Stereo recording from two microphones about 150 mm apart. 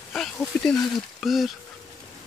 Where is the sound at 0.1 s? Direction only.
5° left (ahead or behind).